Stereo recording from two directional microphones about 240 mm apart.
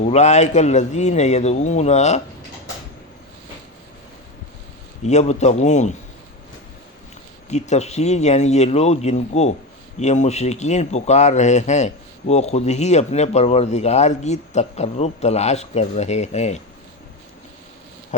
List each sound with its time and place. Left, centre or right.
0.0 s speech: left
5.0 s speech: left
7.5 s speech: left